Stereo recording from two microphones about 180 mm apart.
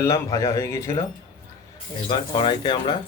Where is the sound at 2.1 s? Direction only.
25° left (ahead or behind).